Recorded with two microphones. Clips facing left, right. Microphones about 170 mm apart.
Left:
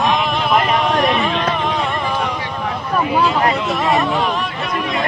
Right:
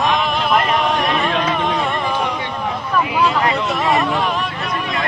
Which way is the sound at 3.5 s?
Centre (ahead or behind).